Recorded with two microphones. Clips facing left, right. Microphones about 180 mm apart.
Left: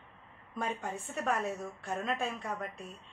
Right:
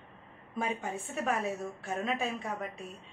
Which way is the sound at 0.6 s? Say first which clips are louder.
Right 2 dB; centre (ahead or behind).